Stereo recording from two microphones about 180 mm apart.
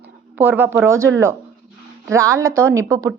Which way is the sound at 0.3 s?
10° right (ahead or behind).